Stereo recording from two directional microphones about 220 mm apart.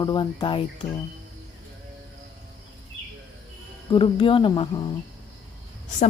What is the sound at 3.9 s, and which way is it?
Speech, 25° left (ahead or behind).